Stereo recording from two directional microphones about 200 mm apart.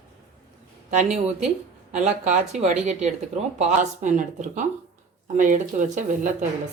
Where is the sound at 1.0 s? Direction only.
35° right (ahead or behind).